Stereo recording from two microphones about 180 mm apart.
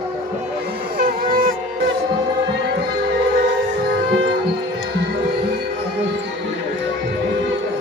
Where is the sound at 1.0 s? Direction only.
50° right (ahead or behind).